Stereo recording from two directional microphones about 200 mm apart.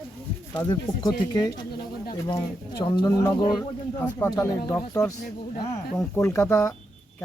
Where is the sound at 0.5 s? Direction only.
20° left (ahead or behind).